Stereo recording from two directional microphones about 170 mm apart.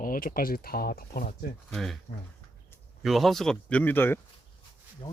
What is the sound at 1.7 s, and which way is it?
Speech, centre (ahead or behind).